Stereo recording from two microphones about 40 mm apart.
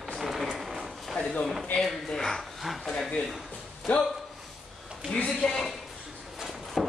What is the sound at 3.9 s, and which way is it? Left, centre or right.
Speech, left.